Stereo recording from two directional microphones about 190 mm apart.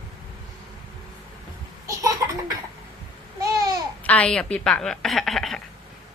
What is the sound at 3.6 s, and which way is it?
Babbling, 20° right (ahead or behind).